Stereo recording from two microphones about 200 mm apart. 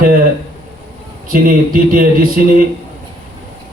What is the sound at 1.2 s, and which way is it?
A man's voice, 45° right (ahead or behind).